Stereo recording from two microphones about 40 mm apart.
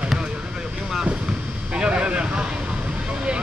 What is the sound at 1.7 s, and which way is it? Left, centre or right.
Vehicle, right.